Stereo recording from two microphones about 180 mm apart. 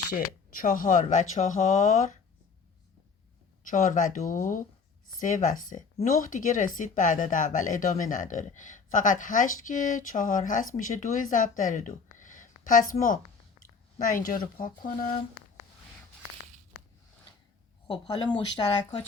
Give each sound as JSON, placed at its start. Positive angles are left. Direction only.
{"t": 0.1, "sound": "speech", "side_deg": 50}
{"t": 3.7, "sound": "speech", "side_deg": 45}
{"t": 18.1, "sound": "speech", "side_deg": 25}